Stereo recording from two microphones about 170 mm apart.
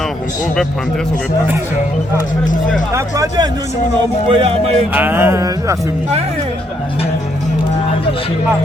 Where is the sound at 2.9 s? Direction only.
20° right (ahead or behind).